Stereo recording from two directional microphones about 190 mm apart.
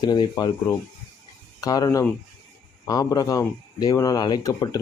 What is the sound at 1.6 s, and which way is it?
Speech, 20° left (ahead or behind).